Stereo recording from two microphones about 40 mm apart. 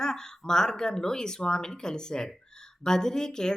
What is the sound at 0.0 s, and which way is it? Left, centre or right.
Speech, centre.